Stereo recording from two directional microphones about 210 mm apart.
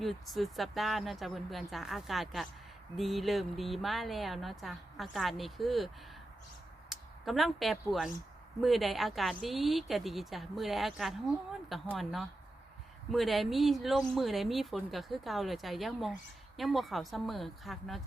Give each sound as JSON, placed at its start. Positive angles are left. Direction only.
{"t": 0.0, "sound": "speech", "side_deg": 0}
{"t": 6.9, "sound": "speech", "side_deg": 0}